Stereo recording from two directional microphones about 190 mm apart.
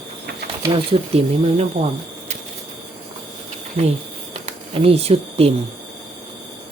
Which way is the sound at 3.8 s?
35° right (ahead or behind).